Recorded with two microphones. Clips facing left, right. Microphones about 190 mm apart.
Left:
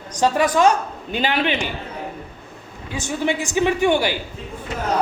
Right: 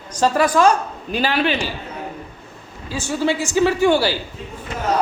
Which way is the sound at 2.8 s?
20° left (ahead or behind).